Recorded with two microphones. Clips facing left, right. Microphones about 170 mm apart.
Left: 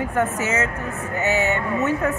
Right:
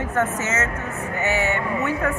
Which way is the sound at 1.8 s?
20° left (ahead or behind).